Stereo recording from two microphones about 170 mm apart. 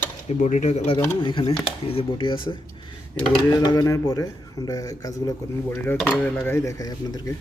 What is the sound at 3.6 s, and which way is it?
Speech, 25° left (ahead or behind).